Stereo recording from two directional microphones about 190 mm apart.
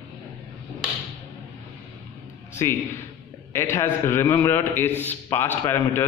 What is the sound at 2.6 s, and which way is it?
A man's voice, 15° left (ahead or behind).